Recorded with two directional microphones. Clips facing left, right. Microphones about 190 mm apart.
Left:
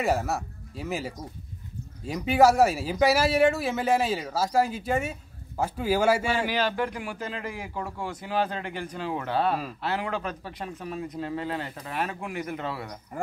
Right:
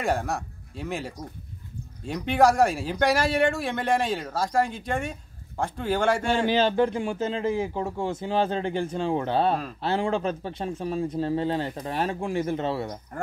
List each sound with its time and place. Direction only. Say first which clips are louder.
0.0 s speech: left 1 dB; 5° left (ahead or behind)
6.5 s speech: right 5 dB; 25° right (ahead or behind)